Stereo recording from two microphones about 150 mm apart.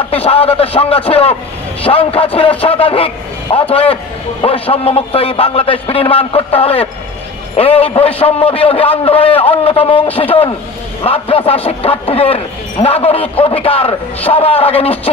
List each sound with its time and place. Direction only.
0.1 s a man's voice: 40° left (ahead or behind)